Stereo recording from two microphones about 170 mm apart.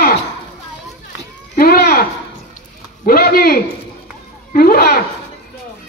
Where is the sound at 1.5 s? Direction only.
65° left (ahead or behind).